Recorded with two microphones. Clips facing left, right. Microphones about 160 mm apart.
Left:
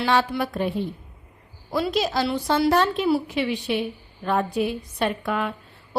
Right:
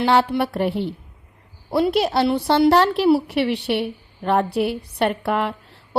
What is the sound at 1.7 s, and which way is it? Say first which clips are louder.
A woman's voice: right 5 dB; 60° right (ahead or behind).